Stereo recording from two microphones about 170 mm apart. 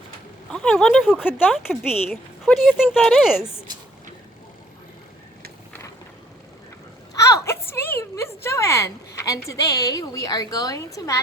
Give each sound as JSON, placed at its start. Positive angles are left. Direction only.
{"t": 0.5, "sound": "speech", "side_deg": 5}
{"t": 7.1, "sound": "a woman's voice", "side_deg": 20}